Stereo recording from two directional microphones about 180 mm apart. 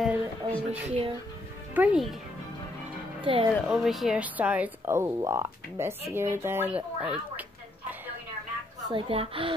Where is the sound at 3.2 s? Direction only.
30° right (ahead or behind).